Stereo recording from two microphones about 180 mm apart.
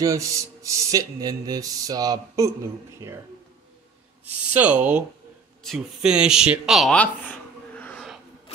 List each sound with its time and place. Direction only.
0.0 s speech: 20° right (ahead or behind)
4.5 s speech: 10° right (ahead or behind)